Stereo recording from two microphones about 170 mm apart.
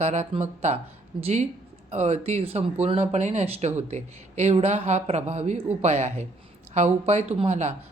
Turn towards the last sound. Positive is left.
turn(degrees=-40)  # may be behind; listen again after turning